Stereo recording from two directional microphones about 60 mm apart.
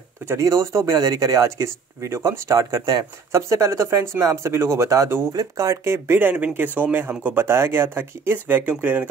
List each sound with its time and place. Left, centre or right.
0.4 s speech: right
0.9 s speech: right
5.3 s speech: right
5.9 s speech: right